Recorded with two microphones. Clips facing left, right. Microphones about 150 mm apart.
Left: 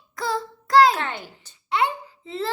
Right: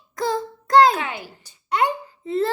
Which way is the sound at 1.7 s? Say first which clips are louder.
Right 2 dB; 45° right (ahead or behind).